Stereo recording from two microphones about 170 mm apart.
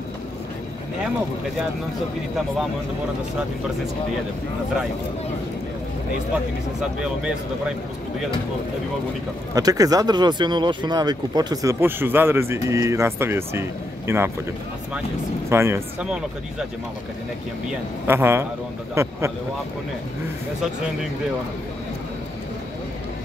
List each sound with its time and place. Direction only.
6.8 s speech: 5° right (ahead or behind)
9.5 s speech: 20° right (ahead or behind)
15.5 s speech: 15° right (ahead or behind)
16.1 s speech: 5° right (ahead or behind)
18.0 s speech: 15° right (ahead or behind)